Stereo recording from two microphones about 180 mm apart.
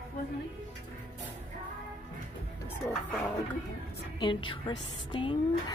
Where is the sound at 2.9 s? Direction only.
5° left (ahead or behind).